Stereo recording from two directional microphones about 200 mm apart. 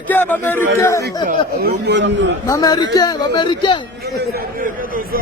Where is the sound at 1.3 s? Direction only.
55° right (ahead or behind).